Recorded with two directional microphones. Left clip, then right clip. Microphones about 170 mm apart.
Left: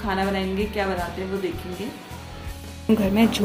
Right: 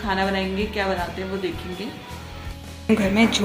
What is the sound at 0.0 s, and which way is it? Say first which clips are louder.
Speech: right 2 dB; centre (ahead or behind).